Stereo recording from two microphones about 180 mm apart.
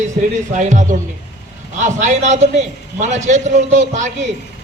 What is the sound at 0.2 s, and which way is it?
A woman's voice, 45° right (ahead or behind).